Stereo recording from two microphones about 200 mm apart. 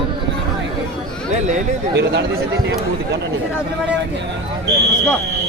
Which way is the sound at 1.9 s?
60° right (ahead or behind).